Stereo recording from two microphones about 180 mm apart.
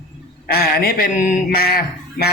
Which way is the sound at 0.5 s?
60° left (ahead or behind).